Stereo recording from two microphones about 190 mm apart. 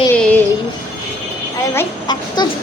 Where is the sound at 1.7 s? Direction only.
20° left (ahead or behind).